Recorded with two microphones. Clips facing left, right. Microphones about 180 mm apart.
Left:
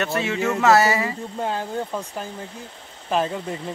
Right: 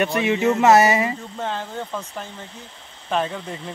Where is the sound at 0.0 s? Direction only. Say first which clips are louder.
Right 4 dB; 15° right (ahead or behind).